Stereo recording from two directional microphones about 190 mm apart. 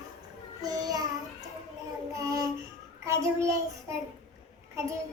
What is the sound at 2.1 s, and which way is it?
Child singing, 15° right (ahead or behind).